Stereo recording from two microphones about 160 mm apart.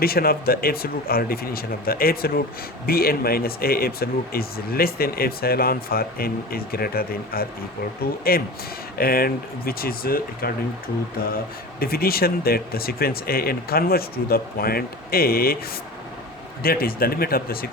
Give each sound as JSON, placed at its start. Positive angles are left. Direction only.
{"t": 0.0, "sound": "speech", "side_deg": 70}
{"t": 11.8, "sound": "speech", "side_deg": 70}
{"t": 16.6, "sound": "speech", "side_deg": 70}